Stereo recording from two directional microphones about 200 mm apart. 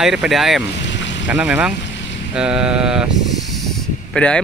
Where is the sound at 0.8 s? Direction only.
65° left (ahead or behind).